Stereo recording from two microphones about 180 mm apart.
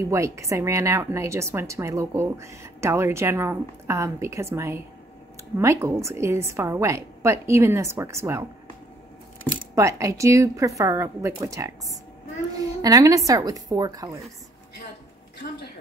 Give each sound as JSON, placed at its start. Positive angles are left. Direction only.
{"t": 0.0, "sound": "a woman's voice", "side_deg": -15}
{"t": 9.8, "sound": "a woman's voice", "side_deg": -15}